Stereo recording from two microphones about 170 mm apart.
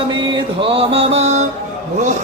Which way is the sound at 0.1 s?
25° right (ahead or behind).